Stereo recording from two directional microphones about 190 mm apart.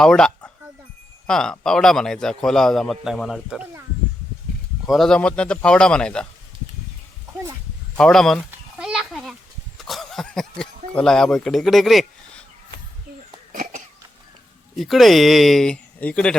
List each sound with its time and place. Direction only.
0.0 s a man's voice: 5° left (ahead or behind)
4.9 s a man's voice: centre (ahead or behind)
7.9 s a man's voice: centre (ahead or behind)
8.4 s a sound: 5° right (ahead or behind)
9.7 s cough: centre (ahead or behind)
10.9 s a man's voice: 5° left (ahead or behind)
13.5 s cough: 45° right (ahead or behind)
14.8 s a man's voice: centre (ahead or behind)